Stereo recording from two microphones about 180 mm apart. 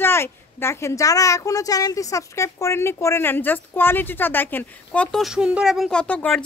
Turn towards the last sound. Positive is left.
turn(degrees=5)  # may be behind; listen again after turning